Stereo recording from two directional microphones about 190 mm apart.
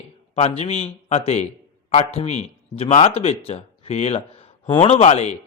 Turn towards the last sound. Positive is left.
turn(degrees=35)  # may be behind; listen again after turning